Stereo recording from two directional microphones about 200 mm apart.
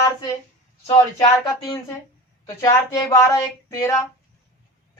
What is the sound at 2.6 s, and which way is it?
Speech, 15° left (ahead or behind).